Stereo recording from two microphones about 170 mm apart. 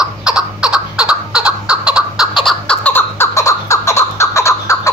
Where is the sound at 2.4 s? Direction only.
5° left (ahead or behind).